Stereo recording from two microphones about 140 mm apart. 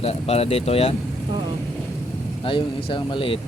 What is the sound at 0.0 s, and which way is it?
Speech, 45° left (ahead or behind).